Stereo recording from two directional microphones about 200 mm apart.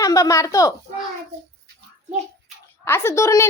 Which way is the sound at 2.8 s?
15° left (ahead or behind).